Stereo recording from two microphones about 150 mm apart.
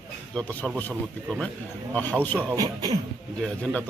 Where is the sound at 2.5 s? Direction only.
25° right (ahead or behind).